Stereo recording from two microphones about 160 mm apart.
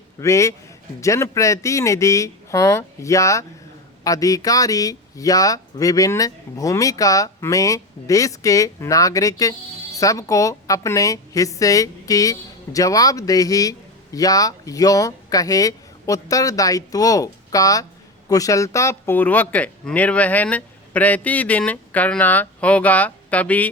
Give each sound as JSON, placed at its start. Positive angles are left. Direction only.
{"t": 0.2, "sound": "speech", "side_deg": 20}